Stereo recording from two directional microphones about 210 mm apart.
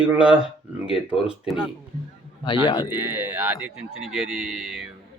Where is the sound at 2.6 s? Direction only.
20° left (ahead or behind).